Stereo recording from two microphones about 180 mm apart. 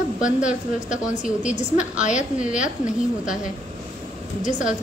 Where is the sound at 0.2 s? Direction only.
5° right (ahead or behind).